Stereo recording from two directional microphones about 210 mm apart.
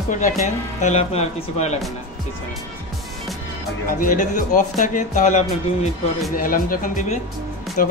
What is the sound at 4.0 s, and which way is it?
Speech, 40° left (ahead or behind).